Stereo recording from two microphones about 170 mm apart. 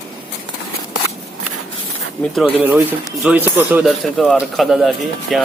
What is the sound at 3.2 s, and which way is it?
Speech, 10° right (ahead or behind).